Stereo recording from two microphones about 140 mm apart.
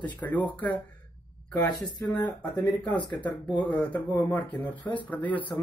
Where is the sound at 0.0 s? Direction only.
10° left (ahead or behind).